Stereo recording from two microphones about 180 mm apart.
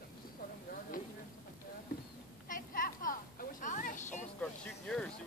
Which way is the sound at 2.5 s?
50° left (ahead or behind).